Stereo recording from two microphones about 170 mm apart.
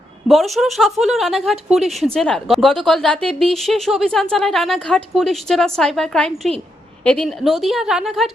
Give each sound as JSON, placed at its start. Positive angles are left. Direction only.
{"t": 0.3, "sound": "speech", "side_deg": 0}